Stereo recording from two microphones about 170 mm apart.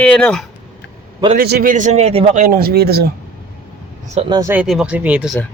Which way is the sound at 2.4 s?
60° right (ahead or behind).